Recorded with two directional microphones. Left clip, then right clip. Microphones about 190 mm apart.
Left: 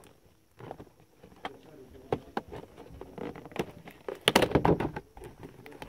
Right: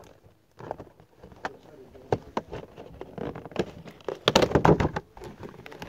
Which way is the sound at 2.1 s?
20° right (ahead or behind).